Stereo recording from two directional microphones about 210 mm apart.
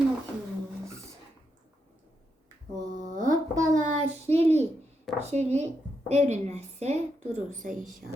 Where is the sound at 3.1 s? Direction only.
40° right (ahead or behind).